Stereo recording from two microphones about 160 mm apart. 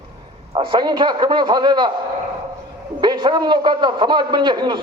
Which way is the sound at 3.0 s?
30° right (ahead or behind).